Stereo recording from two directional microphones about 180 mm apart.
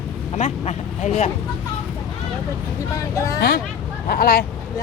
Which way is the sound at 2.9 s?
20° left (ahead or behind).